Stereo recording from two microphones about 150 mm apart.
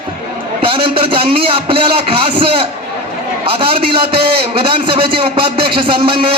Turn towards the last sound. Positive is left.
turn(degrees=-35)  # may be behind; listen again after turning